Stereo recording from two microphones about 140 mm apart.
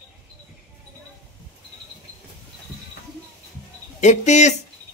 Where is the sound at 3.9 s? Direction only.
55° left (ahead or behind).